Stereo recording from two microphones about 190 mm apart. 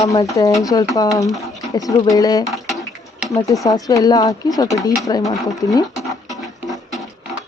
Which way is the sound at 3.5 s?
20° left (ahead or behind).